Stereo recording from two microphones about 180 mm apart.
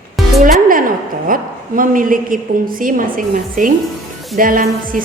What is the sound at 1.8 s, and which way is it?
A woman's voice, 50° right (ahead or behind).